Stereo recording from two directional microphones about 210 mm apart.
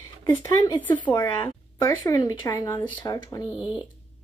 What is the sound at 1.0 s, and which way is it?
Speech, 10° left (ahead or behind).